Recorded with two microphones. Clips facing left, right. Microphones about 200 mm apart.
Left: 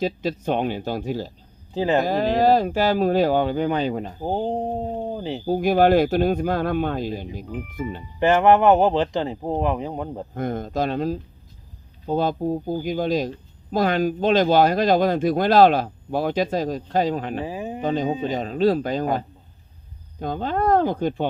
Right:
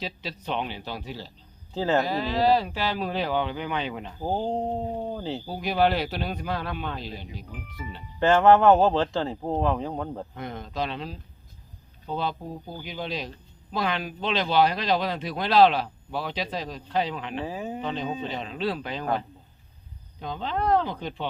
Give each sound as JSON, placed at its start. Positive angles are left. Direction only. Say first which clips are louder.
{"t": 0.0, "sound": "speech", "louder": "left 11 dB", "side_deg": 50}
{"t": 1.7, "sound": "speech", "louder": "left 3 dB", "side_deg": 15}
{"t": 2.0, "sound": "speech", "louder": "left 5 dB", "side_deg": 50}
{"t": 4.2, "sound": "speech", "louder": "left 1 dB", "side_deg": 15}
{"t": 5.5, "sound": "speech", "louder": "left 8 dB", "side_deg": 50}
{"t": 8.2, "sound": "speech", "louder": "left 2 dB", "side_deg": 15}
{"t": 10.3, "sound": "speech", "louder": "left 12 dB", "side_deg": 45}
{"t": 17.4, "sound": "speech", "louder": "left 3 dB", "side_deg": 15}
{"t": 17.8, "sound": "speech", "louder": "left 11 dB", "side_deg": 45}
{"t": 20.1, "sound": "speech", "louder": "left 6 dB", "side_deg": 50}